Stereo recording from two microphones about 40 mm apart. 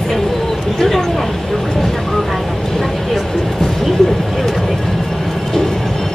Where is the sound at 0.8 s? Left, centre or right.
Centre.